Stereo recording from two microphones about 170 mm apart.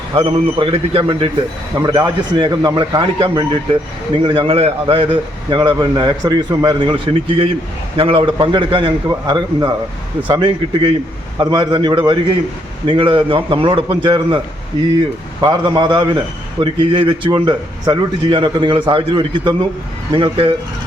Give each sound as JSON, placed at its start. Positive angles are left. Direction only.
{"t": 0.3, "sound": "a man's voice", "side_deg": -30}
{"t": 1.8, "sound": "a man's voice", "side_deg": -20}